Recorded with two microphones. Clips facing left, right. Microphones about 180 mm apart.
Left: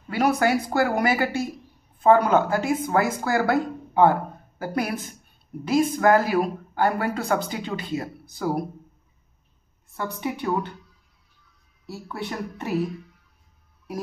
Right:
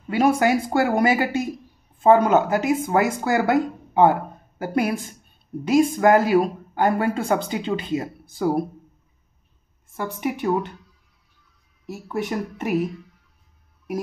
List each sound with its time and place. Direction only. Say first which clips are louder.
0.1 s speech: right 3 dB; 20° right (ahead or behind)
9.9 s a woman's voice: right 3 dB; 15° right (ahead or behind)
11.8 s speech: right 5 dB; 20° right (ahead or behind)